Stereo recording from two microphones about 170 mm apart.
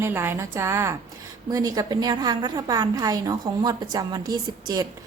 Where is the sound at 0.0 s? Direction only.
15° right (ahead or behind).